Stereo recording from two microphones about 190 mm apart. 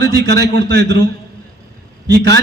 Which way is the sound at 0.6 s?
60° right (ahead or behind).